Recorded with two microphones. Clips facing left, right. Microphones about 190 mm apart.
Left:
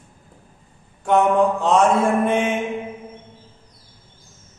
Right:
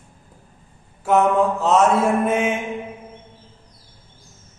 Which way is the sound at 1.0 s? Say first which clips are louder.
Even; 5° right (ahead or behind).